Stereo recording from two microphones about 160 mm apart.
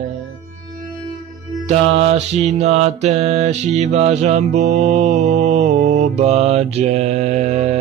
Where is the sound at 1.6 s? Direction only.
40° right (ahead or behind).